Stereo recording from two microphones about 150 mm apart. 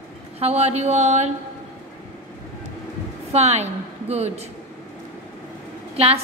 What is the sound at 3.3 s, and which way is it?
A woman's voice, 45° right (ahead or behind).